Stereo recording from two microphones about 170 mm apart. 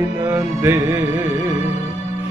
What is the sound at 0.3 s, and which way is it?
Music, 15° right (ahead or behind).